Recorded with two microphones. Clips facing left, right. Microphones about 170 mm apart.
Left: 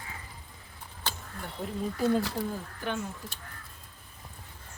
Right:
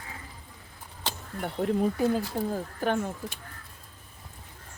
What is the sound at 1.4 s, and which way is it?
Speech, 65° right (ahead or behind).